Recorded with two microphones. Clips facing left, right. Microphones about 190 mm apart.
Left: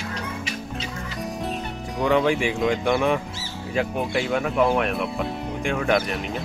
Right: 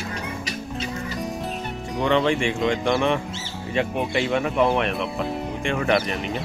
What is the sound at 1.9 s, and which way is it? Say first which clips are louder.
Speech: even; 5° left (ahead or behind).